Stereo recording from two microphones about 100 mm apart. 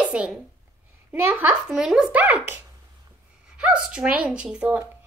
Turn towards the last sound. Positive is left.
turn(degrees=-15)  # may be behind; listen again after turning